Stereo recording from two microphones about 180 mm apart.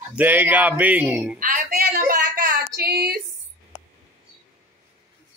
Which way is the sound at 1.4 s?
55° right (ahead or behind).